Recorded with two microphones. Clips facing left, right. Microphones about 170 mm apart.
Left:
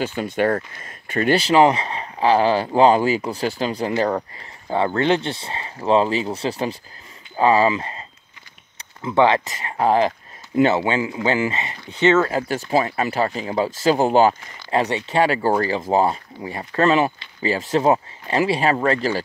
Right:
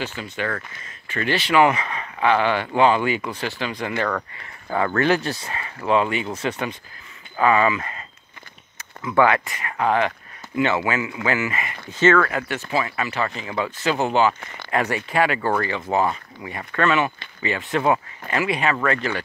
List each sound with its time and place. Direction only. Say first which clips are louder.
0.0 s speech: left 7 dB; 50° left (ahead or behind)
4.6 s speech: left 1 dB; 25° left (ahead or behind)
9.0 s speech: left 2 dB; 25° left (ahead or behind)
12.3 s speech: left 4 dB; 35° left (ahead or behind)
14.7 s speech: left 2 dB; 20° left (ahead or behind)